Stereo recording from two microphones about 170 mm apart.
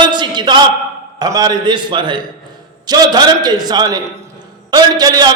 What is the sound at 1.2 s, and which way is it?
A man's voice, 25° right (ahead or behind).